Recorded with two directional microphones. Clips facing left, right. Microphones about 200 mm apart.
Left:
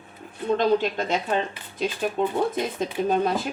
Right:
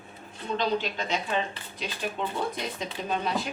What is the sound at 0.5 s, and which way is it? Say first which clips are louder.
A woman's voice: left 6 dB; 50° left (ahead or behind).